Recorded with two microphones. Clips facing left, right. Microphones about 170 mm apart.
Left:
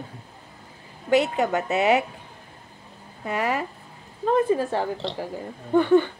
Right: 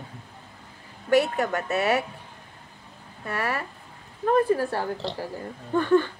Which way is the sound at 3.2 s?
15° left (ahead or behind).